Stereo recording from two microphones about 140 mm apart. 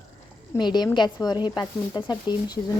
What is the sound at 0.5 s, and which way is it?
Speech, 30° left (ahead or behind).